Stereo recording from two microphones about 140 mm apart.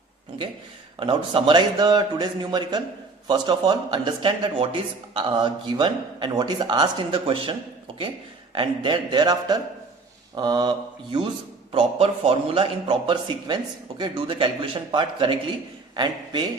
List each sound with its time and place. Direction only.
0.9 s speech: 35° right (ahead or behind)
8.5 s speech: 35° right (ahead or behind)
11.7 s a man's voice: 45° right (ahead or behind)